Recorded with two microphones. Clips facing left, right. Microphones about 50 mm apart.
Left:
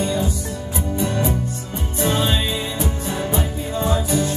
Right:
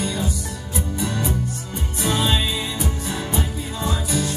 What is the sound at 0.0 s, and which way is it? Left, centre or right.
Music, left.